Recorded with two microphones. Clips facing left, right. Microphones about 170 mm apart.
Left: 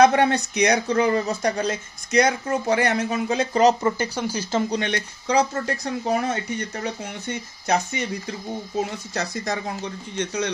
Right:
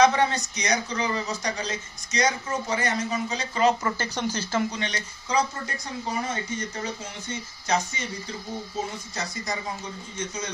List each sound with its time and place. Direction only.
0.0 s speech: 60° left (ahead or behind)
3.8 s speech: 10° left (ahead or behind)
4.5 s speech: 25° left (ahead or behind)
4.7 s speech: 60° left (ahead or behind)
10.1 s a man's voice: 65° left (ahead or behind)